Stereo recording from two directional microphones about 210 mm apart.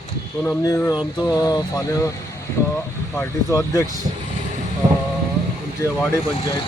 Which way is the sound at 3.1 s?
15° left (ahead or behind).